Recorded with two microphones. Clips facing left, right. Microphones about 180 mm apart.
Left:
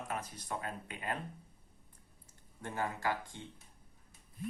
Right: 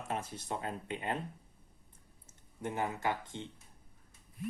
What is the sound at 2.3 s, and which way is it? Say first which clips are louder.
Speech: right 6 dB; 20° right (ahead or behind).